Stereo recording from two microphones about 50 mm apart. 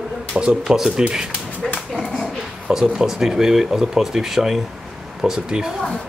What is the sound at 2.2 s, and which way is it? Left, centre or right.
Speech, centre.